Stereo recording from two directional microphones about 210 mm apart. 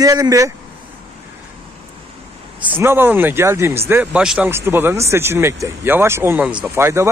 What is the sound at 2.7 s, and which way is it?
Speech, 10° right (ahead or behind).